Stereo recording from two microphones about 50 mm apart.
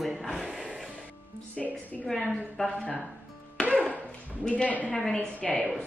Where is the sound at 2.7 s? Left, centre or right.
Left.